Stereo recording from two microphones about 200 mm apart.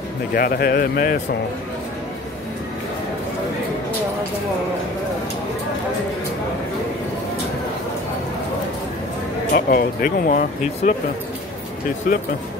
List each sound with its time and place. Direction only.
0.3 s speech: 50° left (ahead or behind)
9.5 s speech: 45° left (ahead or behind)